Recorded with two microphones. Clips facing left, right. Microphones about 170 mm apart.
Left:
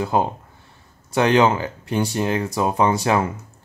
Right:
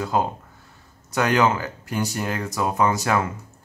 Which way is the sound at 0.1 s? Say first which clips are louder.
Left 2 dB; 20° left (ahead or behind).